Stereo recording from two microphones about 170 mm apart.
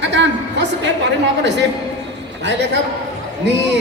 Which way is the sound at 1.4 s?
90° right.